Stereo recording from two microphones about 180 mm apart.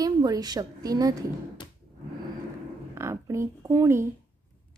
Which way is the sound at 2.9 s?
15° right (ahead or behind).